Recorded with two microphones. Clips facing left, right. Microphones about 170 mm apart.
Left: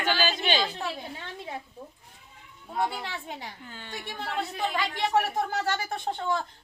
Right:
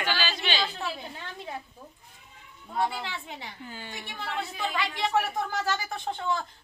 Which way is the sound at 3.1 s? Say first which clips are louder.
Left 1 dB; 45° left (ahead or behind).